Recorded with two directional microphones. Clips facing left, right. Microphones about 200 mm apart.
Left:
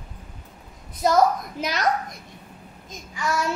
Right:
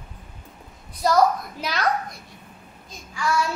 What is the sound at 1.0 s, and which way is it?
Child singing, 20° left (ahead or behind).